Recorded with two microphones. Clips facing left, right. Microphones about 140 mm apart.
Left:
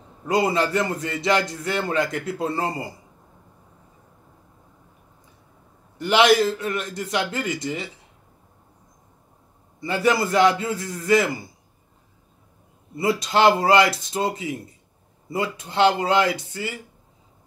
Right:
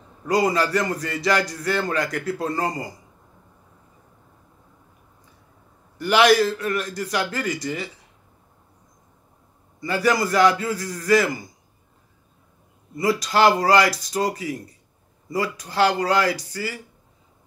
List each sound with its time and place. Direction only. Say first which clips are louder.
0.3 s a man's voice: right 1 dB; 25° left (ahead or behind)
5.9 s a man's voice: even; 25° left (ahead or behind)
9.8 s a man's voice: even; 25° left (ahead or behind)
12.9 s a man's voice: even; 25° left (ahead or behind)